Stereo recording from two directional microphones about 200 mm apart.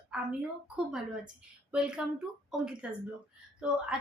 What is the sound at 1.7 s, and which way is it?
A woman's voice, 5° right (ahead or behind).